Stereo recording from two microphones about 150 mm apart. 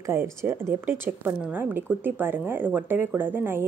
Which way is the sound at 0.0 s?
15° right (ahead or behind).